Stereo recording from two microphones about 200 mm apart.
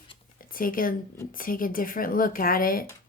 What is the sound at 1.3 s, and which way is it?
Speech, 45° left (ahead or behind).